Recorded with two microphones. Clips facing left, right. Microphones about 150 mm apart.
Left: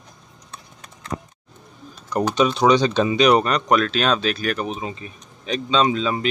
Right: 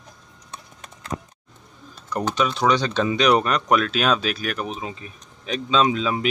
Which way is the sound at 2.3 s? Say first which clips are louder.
Left 4 dB; 20° left (ahead or behind).